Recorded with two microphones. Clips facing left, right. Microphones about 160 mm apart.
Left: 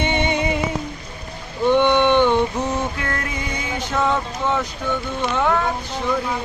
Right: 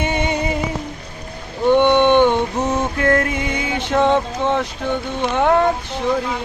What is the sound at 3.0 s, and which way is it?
Music, 50° right (ahead or behind).